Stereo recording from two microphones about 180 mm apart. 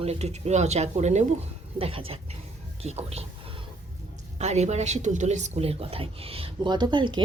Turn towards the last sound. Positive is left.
turn(degrees=-25)  # may be behind; listen again after turning